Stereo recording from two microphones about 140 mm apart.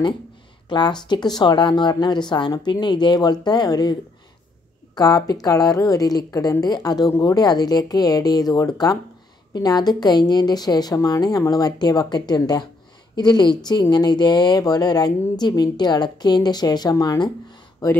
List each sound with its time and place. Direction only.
0.7 s speech: 35° left (ahead or behind)
4.9 s a woman's voice: 25° left (ahead or behind)